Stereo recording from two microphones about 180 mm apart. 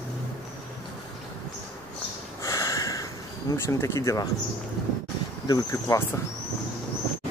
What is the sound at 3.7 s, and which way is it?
Speech, 15° left (ahead or behind).